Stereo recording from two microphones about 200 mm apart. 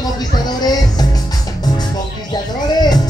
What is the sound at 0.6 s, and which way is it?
Music, 20° left (ahead or behind).